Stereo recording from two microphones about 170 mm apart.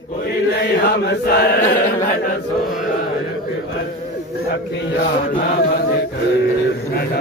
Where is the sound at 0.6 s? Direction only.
65° left (ahead or behind).